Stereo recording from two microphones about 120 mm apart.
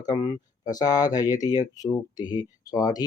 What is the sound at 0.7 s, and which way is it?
Speech, 30° left (ahead or behind).